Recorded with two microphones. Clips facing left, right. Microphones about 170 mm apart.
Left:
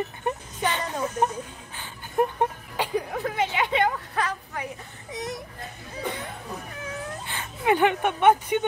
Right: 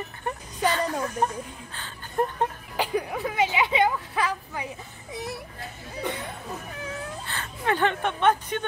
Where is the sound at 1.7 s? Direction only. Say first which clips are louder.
Left 3 dB; 15° left (ahead or behind).